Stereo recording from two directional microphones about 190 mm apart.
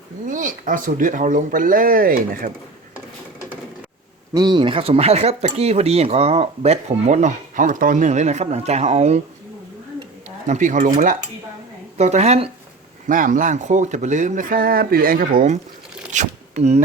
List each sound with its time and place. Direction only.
0.3 s speech: 45° right (ahead or behind)
4.4 s speech: 20° right (ahead or behind)
10.2 s speech: 40° right (ahead or behind)